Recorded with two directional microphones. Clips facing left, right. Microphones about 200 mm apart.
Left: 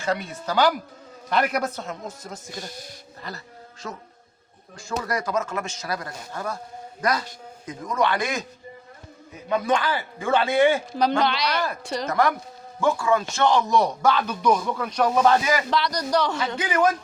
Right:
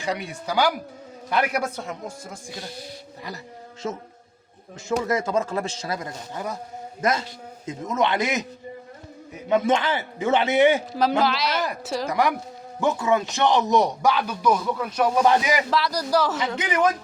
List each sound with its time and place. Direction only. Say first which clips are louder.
0.0 s a man's voice: left 1 dB; 15° right (ahead or behind)
9.5 s a man's voice: right 2 dB; 25° right (ahead or behind)
11.2 s a man's voice: right 1 dB; 5° right (ahead or behind)
12.8 s speech: even; 20° right (ahead or behind)
15.7 s a man's voice: right 1 dB; 5° right (ahead or behind)
16.6 s a man's voice: left 1 dB; 20° right (ahead or behind)